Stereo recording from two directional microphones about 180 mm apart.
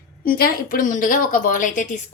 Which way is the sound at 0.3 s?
55° left (ahead or behind).